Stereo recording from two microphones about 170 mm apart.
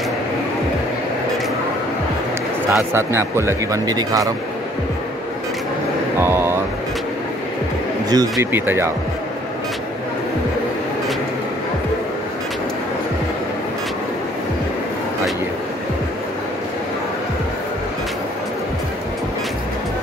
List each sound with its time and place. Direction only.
2.7 s speech: 15° right (ahead or behind)
6.1 s vehicle: 15° right (ahead or behind)
8.1 s speech: 25° right (ahead or behind)
8.5 s speech: 10° right (ahead or behind)